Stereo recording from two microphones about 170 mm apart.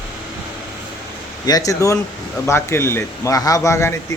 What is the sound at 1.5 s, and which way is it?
Speech, 20° left (ahead or behind).